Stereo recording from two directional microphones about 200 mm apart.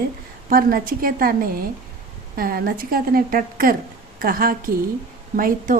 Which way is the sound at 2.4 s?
50° right (ahead or behind).